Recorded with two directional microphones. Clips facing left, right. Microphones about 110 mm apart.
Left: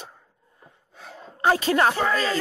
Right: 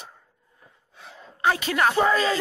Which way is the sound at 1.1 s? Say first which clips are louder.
Left 2 dB; 35° left (ahead or behind).